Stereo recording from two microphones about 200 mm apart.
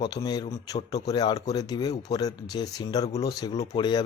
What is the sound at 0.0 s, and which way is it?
A man's voice, 20° left (ahead or behind).